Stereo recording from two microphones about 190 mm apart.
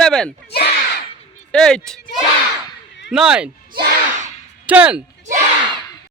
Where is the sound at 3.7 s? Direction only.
50° right (ahead or behind).